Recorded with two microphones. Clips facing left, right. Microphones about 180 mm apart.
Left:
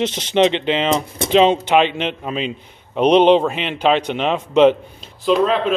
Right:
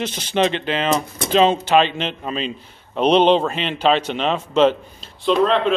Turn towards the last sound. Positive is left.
turn(degrees=5)  # may be behind; listen again after turning